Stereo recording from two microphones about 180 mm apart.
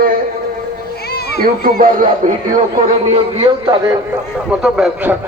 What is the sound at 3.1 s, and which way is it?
Speech, 30° right (ahead or behind).